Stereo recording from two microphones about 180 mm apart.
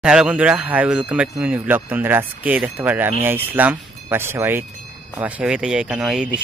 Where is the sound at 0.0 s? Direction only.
5° right (ahead or behind).